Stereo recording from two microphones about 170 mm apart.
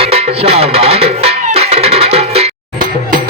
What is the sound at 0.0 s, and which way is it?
Music, 35° right (ahead or behind).